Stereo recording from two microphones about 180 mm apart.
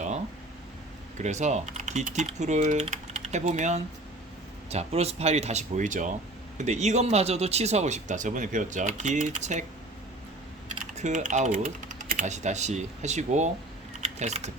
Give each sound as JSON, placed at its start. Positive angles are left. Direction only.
{"t": 1.2, "sound": "speech", "side_deg": -40}
{"t": 10.9, "sound": "speech", "side_deg": -40}
{"t": 14.0, "sound": "typing", "side_deg": -40}